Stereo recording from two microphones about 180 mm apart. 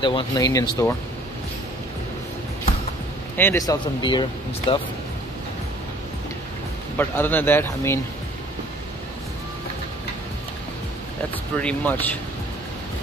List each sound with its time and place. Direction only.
0.0 s speech: 25° left (ahead or behind)
3.3 s speech: 15° left (ahead or behind)
7.0 s speech: 10° left (ahead or behind)
11.6 s speech: 10° left (ahead or behind)